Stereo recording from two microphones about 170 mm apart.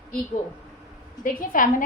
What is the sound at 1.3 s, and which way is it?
Speech, 50° left (ahead or behind).